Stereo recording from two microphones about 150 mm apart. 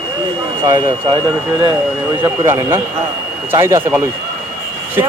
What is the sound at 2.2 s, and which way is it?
Speech, 20° right (ahead or behind).